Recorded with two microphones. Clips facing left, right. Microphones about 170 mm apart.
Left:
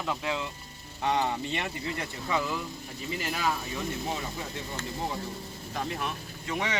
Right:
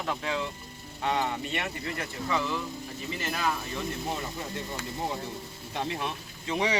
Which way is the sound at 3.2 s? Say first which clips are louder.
Even; 5° left (ahead or behind).